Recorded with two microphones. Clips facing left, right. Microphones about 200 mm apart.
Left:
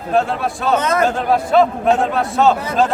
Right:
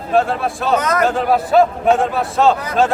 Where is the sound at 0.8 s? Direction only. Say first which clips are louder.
Left 1 dB; 25° left (ahead or behind).